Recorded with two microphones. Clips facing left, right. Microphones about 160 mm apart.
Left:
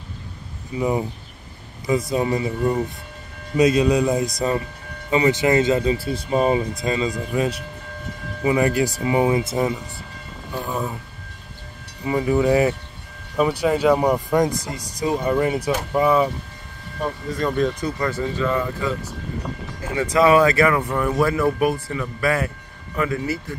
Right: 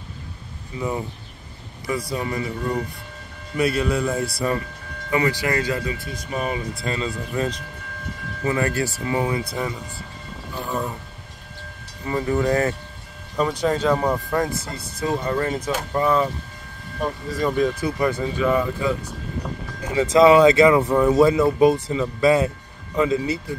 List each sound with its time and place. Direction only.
0.7 s speech: 20° left (ahead or behind)
6.8 s speech: 15° left (ahead or behind)
10.7 s a sound: 5° left (ahead or behind)
12.0 s speech: 10° left (ahead or behind)
17.3 s speech: centre (ahead or behind)
19.8 s speech: 20° right (ahead or behind)